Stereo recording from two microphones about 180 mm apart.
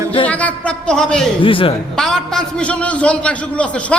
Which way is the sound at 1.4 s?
30° left (ahead or behind).